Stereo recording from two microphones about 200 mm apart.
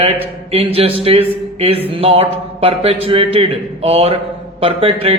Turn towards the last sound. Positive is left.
turn(degrees=-30)  # may be behind; listen again after turning